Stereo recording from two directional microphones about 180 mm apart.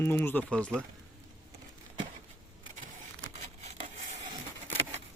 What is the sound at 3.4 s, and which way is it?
Crumpling, 40° right (ahead or behind).